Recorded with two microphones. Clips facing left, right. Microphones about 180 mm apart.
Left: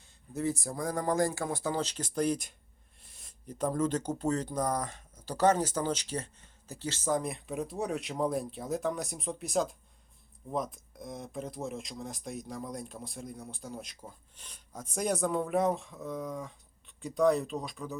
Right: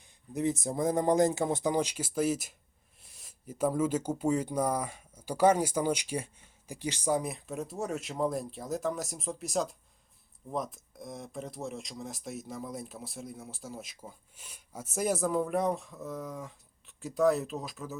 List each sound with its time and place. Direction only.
0.0 s speech: 20° right (ahead or behind); by 17.9 s 5° right (ahead or behind)